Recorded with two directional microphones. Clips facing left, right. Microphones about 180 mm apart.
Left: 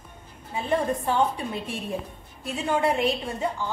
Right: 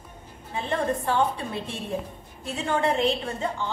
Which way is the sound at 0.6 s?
10° left (ahead or behind).